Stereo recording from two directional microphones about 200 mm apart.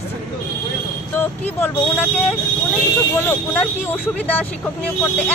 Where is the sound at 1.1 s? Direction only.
10° left (ahead or behind).